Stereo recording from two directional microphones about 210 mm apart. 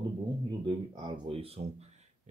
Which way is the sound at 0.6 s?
25° right (ahead or behind).